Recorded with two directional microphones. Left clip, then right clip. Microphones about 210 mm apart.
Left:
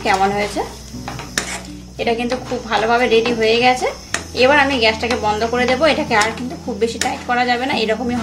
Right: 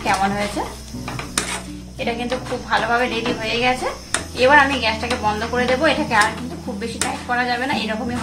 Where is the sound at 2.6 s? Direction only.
45° left (ahead or behind).